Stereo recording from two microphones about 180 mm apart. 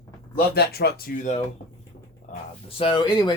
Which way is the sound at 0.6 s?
60° left (ahead or behind).